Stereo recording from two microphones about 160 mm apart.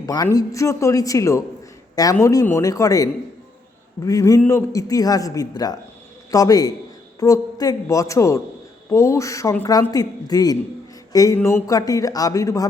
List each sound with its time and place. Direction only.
0.0 s speech: 25° left (ahead or behind)
11.1 s music: 20° left (ahead or behind)
11.3 s speech: 15° left (ahead or behind)